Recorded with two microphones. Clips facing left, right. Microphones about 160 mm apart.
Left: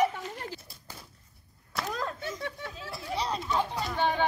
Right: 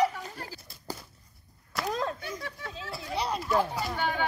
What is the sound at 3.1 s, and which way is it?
Speech, 10° right (ahead or behind).